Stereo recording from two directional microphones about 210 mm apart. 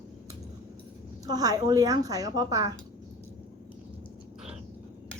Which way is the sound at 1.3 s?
15° right (ahead or behind).